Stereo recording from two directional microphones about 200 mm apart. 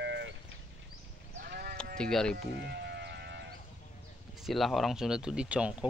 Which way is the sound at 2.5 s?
55° right (ahead or behind).